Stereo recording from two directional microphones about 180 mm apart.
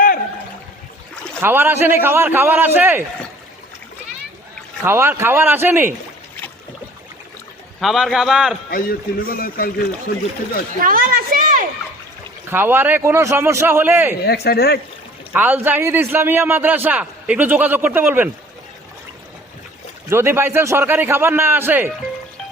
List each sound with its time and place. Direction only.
1.4 s a man's voice: 10° right (ahead or behind)
4.8 s a man's voice: 15° right (ahead or behind)
7.8 s a man's voice: centre (ahead or behind)
8.7 s a man's voice: 55° left (ahead or behind)
10.8 s a woman's voice: 50° right (ahead or behind)
12.5 s a man's voice: 10° right (ahead or behind)
14.3 s a man's voice: 60° left (ahead or behind)
15.3 s a man's voice: 10° right (ahead or behind)
20.1 s a man's voice: 15° right (ahead or behind)